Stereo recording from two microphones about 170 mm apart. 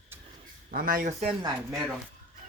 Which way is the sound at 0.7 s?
55° right (ahead or behind).